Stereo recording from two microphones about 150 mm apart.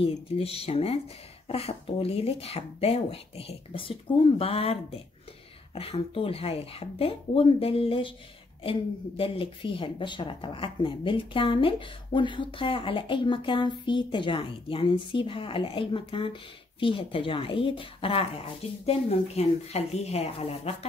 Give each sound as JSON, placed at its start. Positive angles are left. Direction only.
{"t": 0.0, "sound": "speech", "side_deg": 40}
{"t": 5.8, "sound": "speech", "side_deg": 40}